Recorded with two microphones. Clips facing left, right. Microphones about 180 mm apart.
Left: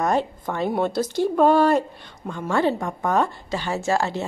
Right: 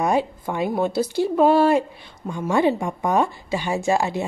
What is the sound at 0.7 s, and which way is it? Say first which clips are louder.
Speech: even; 5° right (ahead or behind).